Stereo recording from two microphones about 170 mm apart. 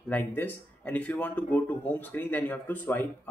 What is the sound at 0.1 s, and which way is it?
Speech, 10° left (ahead or behind).